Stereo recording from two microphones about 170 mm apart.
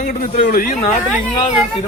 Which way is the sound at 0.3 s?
50° left (ahead or behind).